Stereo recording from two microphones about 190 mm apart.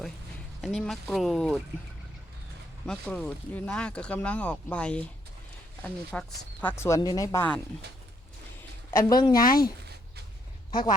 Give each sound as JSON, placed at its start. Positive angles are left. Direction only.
{"t": 0.6, "sound": "speech", "side_deg": 0}
{"t": 2.8, "sound": "speech", "side_deg": 5}
{"t": 8.9, "sound": "speech", "side_deg": 15}
{"t": 9.4, "sound": "speech", "side_deg": 50}